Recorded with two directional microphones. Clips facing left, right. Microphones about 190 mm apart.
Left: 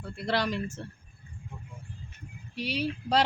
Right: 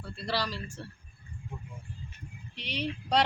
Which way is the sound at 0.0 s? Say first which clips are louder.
Left 4 dB; 20° left (ahead or behind).